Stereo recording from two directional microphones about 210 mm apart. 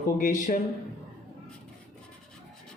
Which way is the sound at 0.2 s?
40° left (ahead or behind).